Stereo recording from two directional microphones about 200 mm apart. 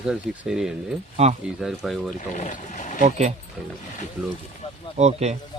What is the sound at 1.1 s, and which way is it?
Speech, 30° right (ahead or behind).